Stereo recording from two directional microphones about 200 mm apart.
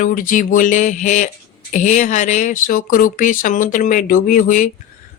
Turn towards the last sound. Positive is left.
turn(degrees=40)  # may be behind; listen again after turning